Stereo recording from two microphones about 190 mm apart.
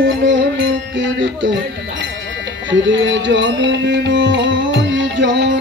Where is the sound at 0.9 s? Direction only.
70° right (ahead or behind).